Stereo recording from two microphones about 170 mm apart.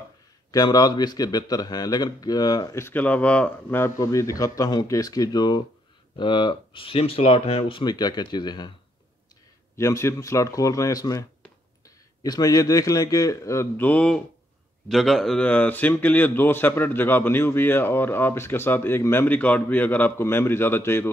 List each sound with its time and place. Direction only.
0.5 s a man's voice: 20° left (ahead or behind)
9.8 s a man's voice: 15° left (ahead or behind)